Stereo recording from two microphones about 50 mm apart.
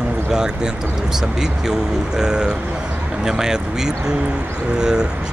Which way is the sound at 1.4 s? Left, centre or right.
Centre.